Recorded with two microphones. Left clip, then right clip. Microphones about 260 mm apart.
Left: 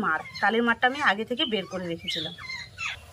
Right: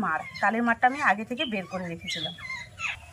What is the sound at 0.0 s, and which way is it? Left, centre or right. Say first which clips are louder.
Speech: left 1 dB; centre.